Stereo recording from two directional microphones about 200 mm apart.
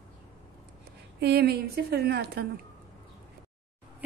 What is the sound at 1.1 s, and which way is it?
A woman's voice, 55° right (ahead or behind).